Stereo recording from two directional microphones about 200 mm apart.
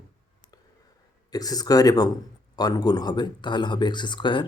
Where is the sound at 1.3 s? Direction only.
20° left (ahead or behind).